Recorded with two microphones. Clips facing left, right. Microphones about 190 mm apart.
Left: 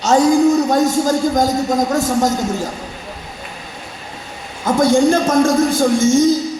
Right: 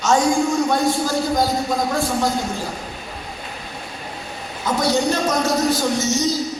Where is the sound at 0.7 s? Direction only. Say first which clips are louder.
Left 5 dB; 45° left (ahead or behind).